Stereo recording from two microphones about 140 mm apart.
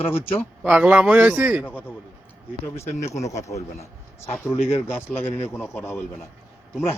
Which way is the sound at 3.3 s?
20° left (ahead or behind).